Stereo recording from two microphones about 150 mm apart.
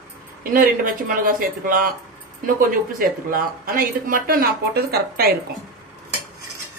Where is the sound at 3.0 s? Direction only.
70° right (ahead or behind); by 5.3 s 90° right.